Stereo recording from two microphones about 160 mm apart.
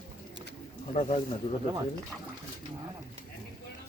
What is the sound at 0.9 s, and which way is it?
Speech, 35° left (ahead or behind).